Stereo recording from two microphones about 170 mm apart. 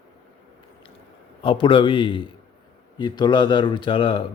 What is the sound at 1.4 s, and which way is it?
Speech, 30° left (ahead or behind).